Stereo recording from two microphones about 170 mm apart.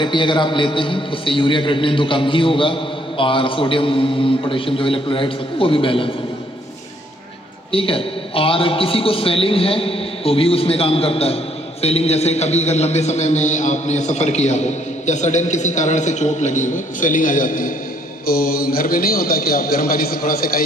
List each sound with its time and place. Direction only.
0.0 s a man's voice: 30° left (ahead or behind)
7.7 s a man's voice: 35° left (ahead or behind); by 20.6 s 60° left (ahead or behind)